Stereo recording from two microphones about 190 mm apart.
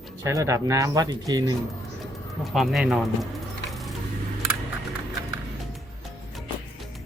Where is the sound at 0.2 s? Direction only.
15° right (ahead or behind).